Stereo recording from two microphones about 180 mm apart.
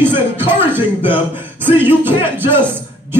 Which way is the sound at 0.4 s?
10° right (ahead or behind).